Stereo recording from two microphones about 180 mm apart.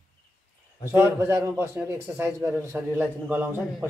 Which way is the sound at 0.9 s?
15° right (ahead or behind).